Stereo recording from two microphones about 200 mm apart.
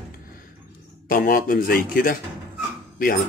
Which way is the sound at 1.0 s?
45° left (ahead or behind).